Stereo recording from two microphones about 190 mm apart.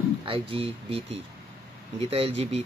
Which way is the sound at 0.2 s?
30° right (ahead or behind).